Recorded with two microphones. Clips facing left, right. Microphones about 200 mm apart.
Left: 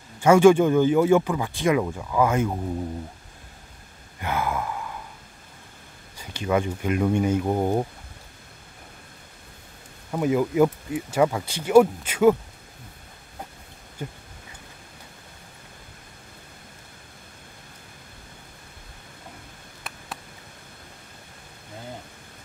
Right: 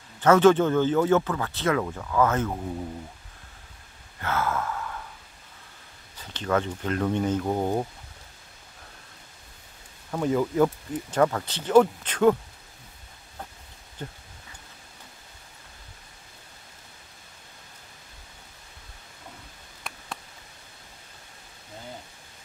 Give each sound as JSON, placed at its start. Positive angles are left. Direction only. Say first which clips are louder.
{"t": 0.2, "sound": "speech", "louder": "left 3 dB", "side_deg": 10}
{"t": 4.2, "sound": "sigh", "louder": "left 1 dB", "side_deg": 15}
{"t": 6.1, "sound": "speech", "louder": "left 2 dB", "side_deg": 10}
{"t": 10.1, "sound": "speech", "louder": "left 2 dB", "side_deg": 10}
{"t": 14.0, "sound": "speech", "louder": "left 3 dB", "side_deg": 10}
{"t": 19.9, "sound": "a sound", "louder": "even", "side_deg": 5}